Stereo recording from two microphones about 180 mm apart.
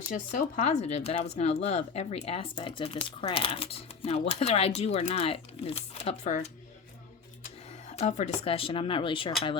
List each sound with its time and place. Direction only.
0.1 s speech: 45° left (ahead or behind); by 9.3 s 30° left (ahead or behind)